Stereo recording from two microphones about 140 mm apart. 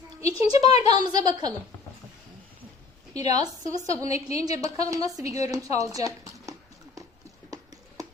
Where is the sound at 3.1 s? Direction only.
30° right (ahead or behind).